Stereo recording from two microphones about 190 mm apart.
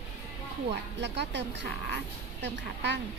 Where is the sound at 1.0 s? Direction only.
65° right (ahead or behind).